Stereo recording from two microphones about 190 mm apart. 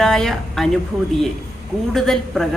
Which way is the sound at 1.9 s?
Centre (ahead or behind).